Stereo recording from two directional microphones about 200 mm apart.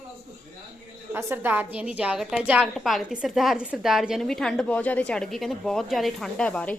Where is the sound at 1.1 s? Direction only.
10° right (ahead or behind).